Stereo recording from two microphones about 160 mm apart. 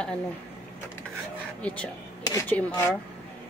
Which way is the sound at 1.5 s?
10° left (ahead or behind).